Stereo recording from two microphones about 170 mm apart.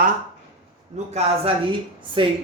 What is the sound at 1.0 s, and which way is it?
Speech, 45° right (ahead or behind).